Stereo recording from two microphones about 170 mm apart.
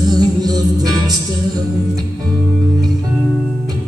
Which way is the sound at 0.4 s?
20° right (ahead or behind).